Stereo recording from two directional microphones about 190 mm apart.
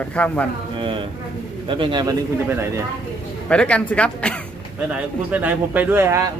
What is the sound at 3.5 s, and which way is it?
Speech, 5° left (ahead or behind).